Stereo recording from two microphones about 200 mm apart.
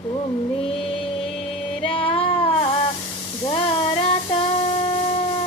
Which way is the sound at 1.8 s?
25° left (ahead or behind).